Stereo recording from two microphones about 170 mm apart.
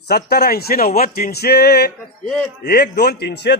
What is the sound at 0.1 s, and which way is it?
A man's voice, 65° left (ahead or behind).